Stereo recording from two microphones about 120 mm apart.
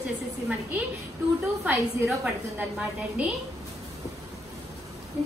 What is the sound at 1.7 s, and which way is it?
Speech, 20° right (ahead or behind).